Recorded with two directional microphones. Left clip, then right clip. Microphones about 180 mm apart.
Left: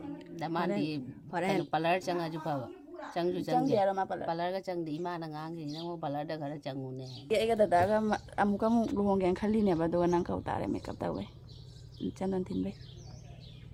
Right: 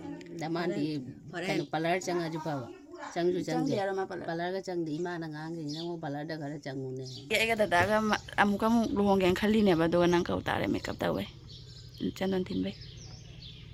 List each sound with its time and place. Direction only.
0.3 s speech: 10° left (ahead or behind)
1.3 s a woman's voice: 40° left (ahead or behind)
1.7 s speech: 15° left (ahead or behind)
3.5 s a woman's voice: 35° left (ahead or behind)
4.3 s speech: 10° left (ahead or behind)